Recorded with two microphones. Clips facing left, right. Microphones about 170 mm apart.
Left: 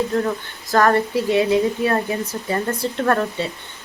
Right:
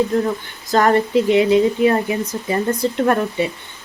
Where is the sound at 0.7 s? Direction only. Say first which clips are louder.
Right 2 dB; 20° right (ahead or behind).